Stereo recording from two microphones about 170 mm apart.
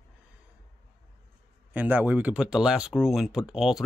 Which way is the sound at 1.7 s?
10° right (ahead or behind).